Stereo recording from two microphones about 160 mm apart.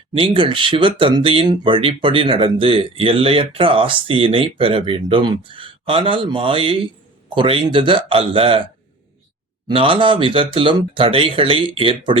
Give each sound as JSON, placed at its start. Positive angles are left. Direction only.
{"t": 0.1, "sound": "speech", "side_deg": -35}
{"t": 9.6, "sound": "speech", "side_deg": -30}